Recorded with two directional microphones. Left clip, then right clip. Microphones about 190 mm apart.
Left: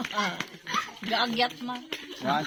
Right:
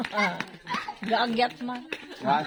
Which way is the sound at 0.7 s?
15° right (ahead or behind).